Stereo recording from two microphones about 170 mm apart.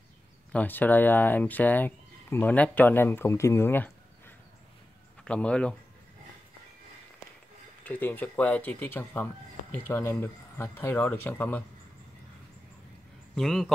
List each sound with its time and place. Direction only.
0.5 s speech: 10° left (ahead or behind)
5.2 s speech: 5° left (ahead or behind)
7.8 s speech: 10° left (ahead or behind)
13.3 s a man's voice: 5° left (ahead or behind)